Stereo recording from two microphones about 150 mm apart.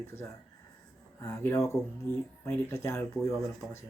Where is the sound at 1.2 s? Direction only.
20° left (ahead or behind).